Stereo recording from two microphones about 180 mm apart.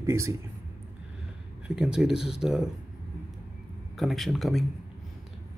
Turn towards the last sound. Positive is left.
turn(degrees=0)  # may be behind; listen again after turning